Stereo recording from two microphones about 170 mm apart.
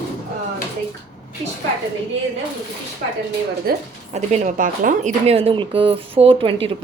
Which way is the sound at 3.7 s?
65° right (ahead or behind).